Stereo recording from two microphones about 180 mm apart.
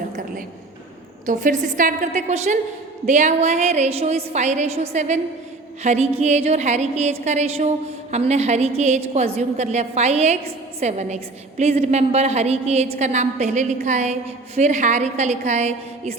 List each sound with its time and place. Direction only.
1.3 s a woman's voice: 45° right (ahead or behind)